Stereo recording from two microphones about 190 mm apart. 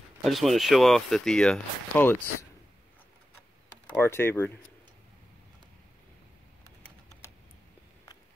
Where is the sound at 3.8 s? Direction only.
10° left (ahead or behind).